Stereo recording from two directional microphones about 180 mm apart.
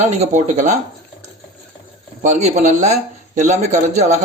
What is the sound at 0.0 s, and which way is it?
Speech, 40° right (ahead or behind).